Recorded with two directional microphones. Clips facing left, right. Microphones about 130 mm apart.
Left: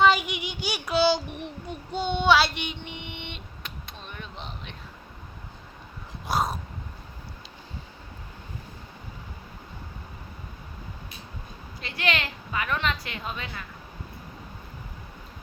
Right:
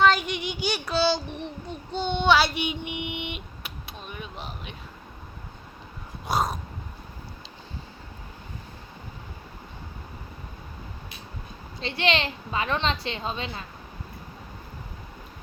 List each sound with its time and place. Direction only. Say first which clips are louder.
0.0 s child singing: even; 10° left (ahead or behind); by 4.7 s 5° right (ahead or behind)
6.2 s dog: right 1 dB; centre (ahead or behind)
11.8 s a sound: right 4 dB; 25° right (ahead or behind)